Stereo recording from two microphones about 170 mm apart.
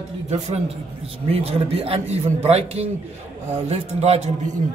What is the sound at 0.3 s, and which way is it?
Speech, 40° right (ahead or behind).